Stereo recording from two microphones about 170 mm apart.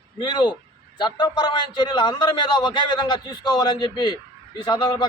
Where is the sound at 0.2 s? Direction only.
25° left (ahead or behind).